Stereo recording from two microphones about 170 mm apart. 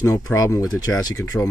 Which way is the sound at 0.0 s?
20° left (ahead or behind).